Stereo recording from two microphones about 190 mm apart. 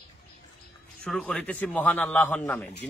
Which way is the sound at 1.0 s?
5° left (ahead or behind).